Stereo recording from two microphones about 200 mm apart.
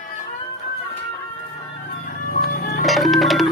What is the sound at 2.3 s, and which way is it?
Music, 50° left (ahead or behind).